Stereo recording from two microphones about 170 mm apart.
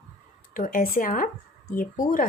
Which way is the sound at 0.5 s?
55° left (ahead or behind).